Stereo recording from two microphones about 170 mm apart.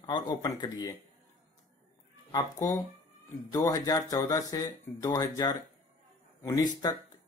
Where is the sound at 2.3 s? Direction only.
20° left (ahead or behind).